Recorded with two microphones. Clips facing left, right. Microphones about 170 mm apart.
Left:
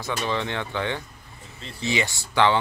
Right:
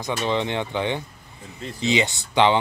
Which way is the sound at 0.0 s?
20° right (ahead or behind).